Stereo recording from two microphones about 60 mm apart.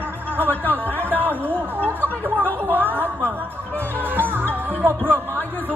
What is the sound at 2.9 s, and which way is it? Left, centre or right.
Music, right.